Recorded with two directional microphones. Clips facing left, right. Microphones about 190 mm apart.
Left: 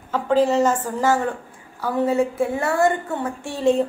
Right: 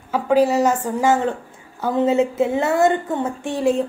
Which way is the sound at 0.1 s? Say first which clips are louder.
Right 2 dB; 10° right (ahead or behind).